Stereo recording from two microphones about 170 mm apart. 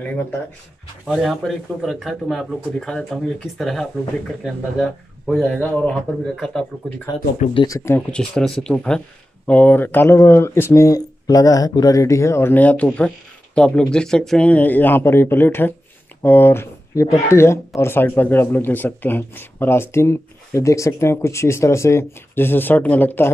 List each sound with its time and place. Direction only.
1.0 s a man's voice: centre (ahead or behind)
7.5 s a man's voice: 20° left (ahead or behind)